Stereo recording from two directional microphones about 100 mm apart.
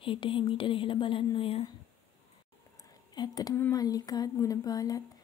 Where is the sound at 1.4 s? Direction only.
70° left (ahead or behind).